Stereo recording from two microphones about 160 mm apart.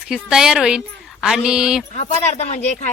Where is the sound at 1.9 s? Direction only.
45° left (ahead or behind).